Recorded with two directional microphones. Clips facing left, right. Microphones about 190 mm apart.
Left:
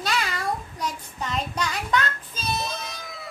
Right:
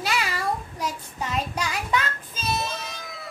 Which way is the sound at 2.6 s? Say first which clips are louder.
Even; 5° right (ahead or behind).